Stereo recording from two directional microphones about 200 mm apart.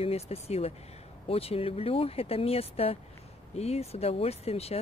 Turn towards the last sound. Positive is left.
turn(degrees=30)  # may be behind; listen again after turning